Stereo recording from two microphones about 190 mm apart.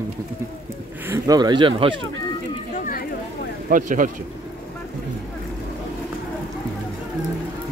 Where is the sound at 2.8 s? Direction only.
45° left (ahead or behind).